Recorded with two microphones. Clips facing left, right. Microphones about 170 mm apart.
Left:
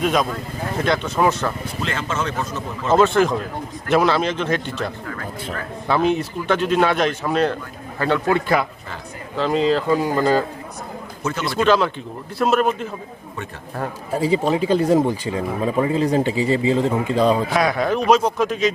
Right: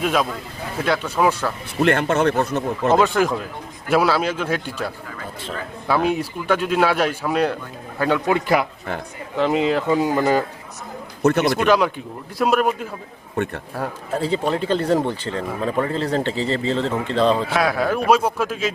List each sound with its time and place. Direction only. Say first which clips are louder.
0.0 s a man's voice: left 1 dB; 5° right (ahead or behind)
1.8 s speech: right 9 dB; 60° right (ahead or behind)
2.9 s speech: left 3 dB; 10° right (ahead or behind)
11.2 s a man's voice: right 9 dB; 65° right (ahead or behind)
11.4 s speech: even; 10° right (ahead or behind)
14.1 s speech: left 3 dB; 10° left (ahead or behind)
17.6 s a man's voice: left 1 dB; 5° right (ahead or behind)